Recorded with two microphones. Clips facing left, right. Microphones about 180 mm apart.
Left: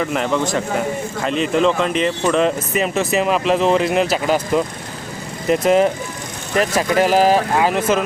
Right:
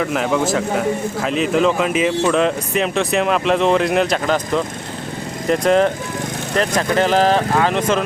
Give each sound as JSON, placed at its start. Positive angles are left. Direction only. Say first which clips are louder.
{"t": 0.0, "sound": "speech", "louder": "right 1 dB", "side_deg": 0}